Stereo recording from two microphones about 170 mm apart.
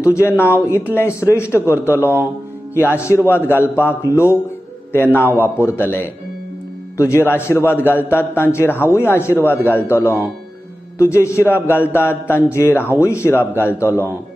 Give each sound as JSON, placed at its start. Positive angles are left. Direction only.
{"t": 0.0, "sound": "a man's voice", "side_deg": 15}
{"t": 5.4, "sound": "a man's voice", "side_deg": 15}